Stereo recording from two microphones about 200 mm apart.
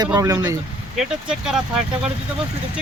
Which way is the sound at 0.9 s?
5° right (ahead or behind).